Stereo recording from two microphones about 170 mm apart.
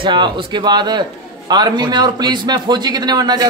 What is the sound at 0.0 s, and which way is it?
A man's voice, 30° right (ahead or behind).